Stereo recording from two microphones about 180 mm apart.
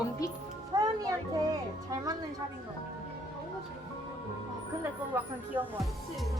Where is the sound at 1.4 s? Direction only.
20° right (ahead or behind).